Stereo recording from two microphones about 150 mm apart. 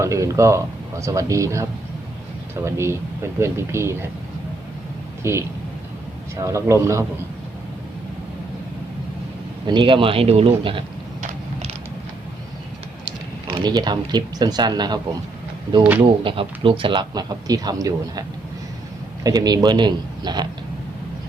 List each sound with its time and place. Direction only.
0.0 s speech: 20° right (ahead or behind)
2.6 s speech: 20° right (ahead or behind)
5.2 s speech: 15° right (ahead or behind)
9.6 s speech: 35° right (ahead or behind)
13.5 s speech: 30° right (ahead or behind)
16.0 s speech: 35° right (ahead or behind)